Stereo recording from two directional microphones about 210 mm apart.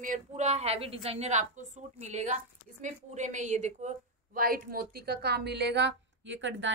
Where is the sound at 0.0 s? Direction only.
35° right (ahead or behind).